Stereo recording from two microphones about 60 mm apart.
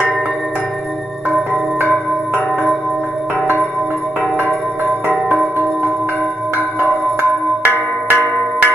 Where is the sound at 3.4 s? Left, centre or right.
Right.